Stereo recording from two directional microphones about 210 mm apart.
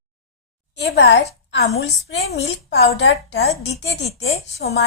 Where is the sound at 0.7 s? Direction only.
55° left (ahead or behind).